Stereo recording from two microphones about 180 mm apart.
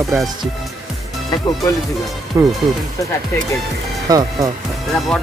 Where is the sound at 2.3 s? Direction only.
15° right (ahead or behind).